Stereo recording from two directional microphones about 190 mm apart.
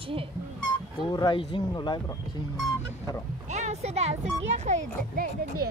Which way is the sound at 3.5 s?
35° right (ahead or behind).